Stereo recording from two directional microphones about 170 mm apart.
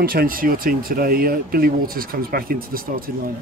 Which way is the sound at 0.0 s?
60° right (ahead or behind).